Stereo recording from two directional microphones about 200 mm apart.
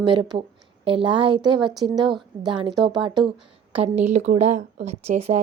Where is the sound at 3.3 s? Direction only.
30° right (ahead or behind).